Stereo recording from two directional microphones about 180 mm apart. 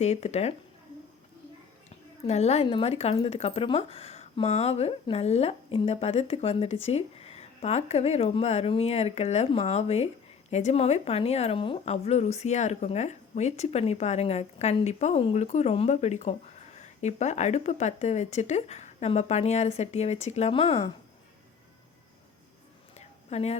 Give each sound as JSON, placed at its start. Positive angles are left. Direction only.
{"t": 0.0, "sound": "a woman's voice", "side_deg": 35}
{"t": 2.2, "sound": "a woman's voice", "side_deg": 35}
{"t": 23.0, "sound": "a sound", "side_deg": 35}